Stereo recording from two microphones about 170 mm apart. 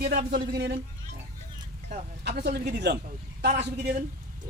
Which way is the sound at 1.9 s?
70° right (ahead or behind).